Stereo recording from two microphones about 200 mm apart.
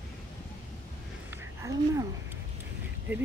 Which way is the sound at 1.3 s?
15° right (ahead or behind).